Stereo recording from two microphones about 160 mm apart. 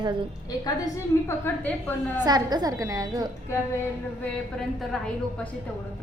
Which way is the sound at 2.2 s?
25° right (ahead or behind).